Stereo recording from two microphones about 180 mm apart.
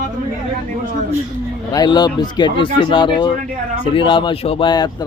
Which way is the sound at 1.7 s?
20° left (ahead or behind).